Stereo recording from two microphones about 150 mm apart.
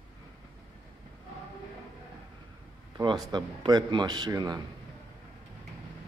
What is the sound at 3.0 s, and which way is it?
Speech, 30° right (ahead or behind).